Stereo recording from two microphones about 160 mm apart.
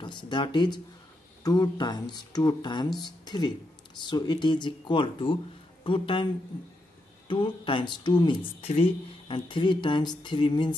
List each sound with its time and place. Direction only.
0.0 s speech: 30° left (ahead or behind)
7.2 s speech: 30° left (ahead or behind)